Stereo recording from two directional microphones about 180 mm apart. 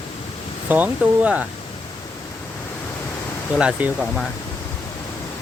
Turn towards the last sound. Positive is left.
turn(degrees=-5)  # may be behind; listen again after turning